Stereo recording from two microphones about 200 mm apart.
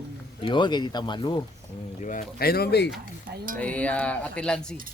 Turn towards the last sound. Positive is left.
turn(degrees=5)  # may be behind; listen again after turning